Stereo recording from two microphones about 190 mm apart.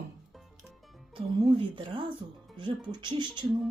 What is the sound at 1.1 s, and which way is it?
Speech, 25° right (ahead or behind).